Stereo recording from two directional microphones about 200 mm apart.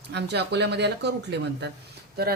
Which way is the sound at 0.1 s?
55° right (ahead or behind).